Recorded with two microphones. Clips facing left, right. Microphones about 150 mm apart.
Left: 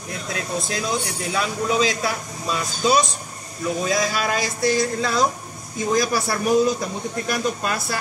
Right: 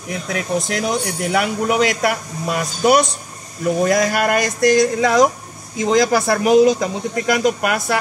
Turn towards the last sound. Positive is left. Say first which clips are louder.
# right 6 dB
turn(degrees=-80)